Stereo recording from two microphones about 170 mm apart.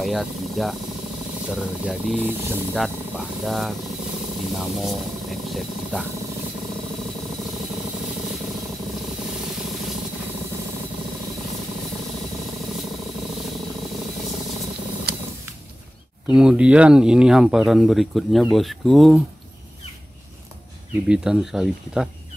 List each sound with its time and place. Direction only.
0.0 s speech: centre (ahead or behind)
16.3 s speech: 5° right (ahead or behind)
21.1 s speech: 5° right (ahead or behind)